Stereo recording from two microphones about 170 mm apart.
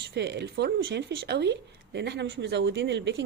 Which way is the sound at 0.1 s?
85° right.